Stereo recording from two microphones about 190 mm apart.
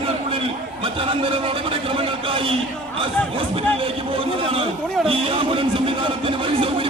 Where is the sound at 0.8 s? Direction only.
30° right (ahead or behind).